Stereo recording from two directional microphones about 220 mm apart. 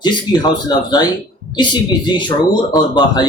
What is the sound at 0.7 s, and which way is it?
Speech, 20° left (ahead or behind).